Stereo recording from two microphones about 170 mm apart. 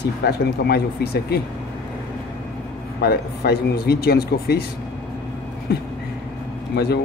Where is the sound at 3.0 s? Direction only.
70° left (ahead or behind).